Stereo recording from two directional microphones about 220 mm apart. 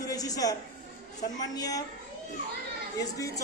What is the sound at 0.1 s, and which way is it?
Music, 15° left (ahead or behind).